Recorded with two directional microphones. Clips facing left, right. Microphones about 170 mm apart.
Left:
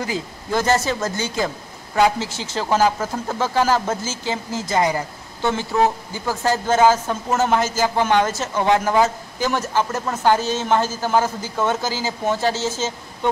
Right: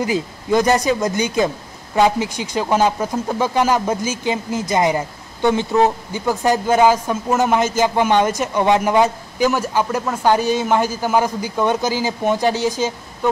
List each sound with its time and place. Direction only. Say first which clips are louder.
0.0 s a man's voice: right 5 dB; 15° right (ahead or behind)